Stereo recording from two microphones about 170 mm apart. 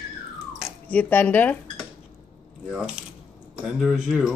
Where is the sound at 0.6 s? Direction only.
10° left (ahead or behind).